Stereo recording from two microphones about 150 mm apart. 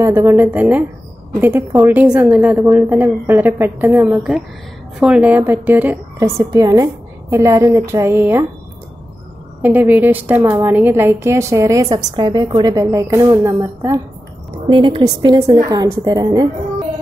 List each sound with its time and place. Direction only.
0.0 s a woman's voice: 15° right (ahead or behind)
9.6 s a woman's voice: 10° right (ahead or behind)
14.7 s a woman's voice: 35° right (ahead or behind)
15.3 s a woman's voice: 20° right (ahead or behind)